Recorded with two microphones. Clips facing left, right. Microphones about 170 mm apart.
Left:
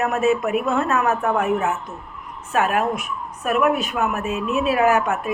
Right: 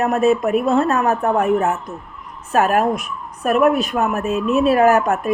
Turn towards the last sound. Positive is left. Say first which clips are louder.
# right 4 dB
turn(degrees=-40)  # may be behind; listen again after turning